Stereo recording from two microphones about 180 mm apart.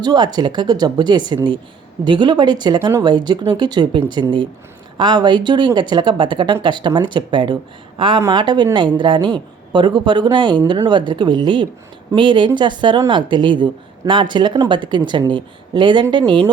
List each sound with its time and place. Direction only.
0.0 s speech: 25° right (ahead or behind)